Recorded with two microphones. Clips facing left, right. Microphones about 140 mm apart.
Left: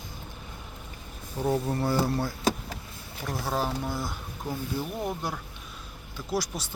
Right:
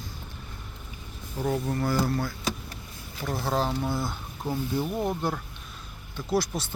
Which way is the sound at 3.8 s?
10° right (ahead or behind).